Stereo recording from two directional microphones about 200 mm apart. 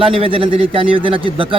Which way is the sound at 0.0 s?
25° right (ahead or behind).